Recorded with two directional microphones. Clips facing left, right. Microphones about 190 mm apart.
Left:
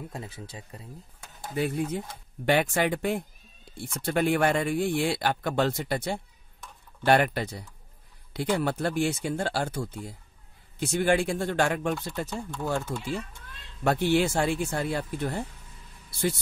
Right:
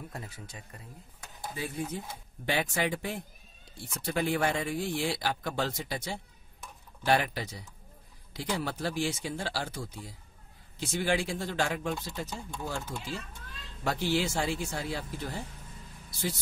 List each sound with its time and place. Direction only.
0.1 s speech: 25° left (ahead or behind)
2.4 s speech: 60° left (ahead or behind)